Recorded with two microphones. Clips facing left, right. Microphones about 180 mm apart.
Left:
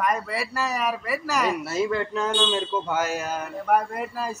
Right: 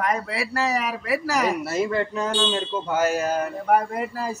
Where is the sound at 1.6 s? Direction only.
65° right (ahead or behind).